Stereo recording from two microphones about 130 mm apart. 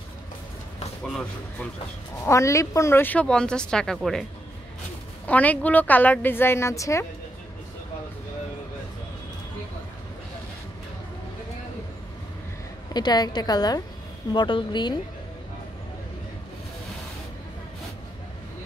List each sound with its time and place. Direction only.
2.2 s speech: 25° left (ahead or behind)
12.9 s a woman's voice: 30° left (ahead or behind)